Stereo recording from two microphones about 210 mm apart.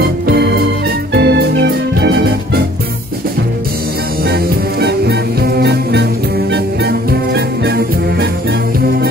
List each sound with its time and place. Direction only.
0.0 s music: 50° right (ahead or behind)
4.3 s music: 50° right (ahead or behind)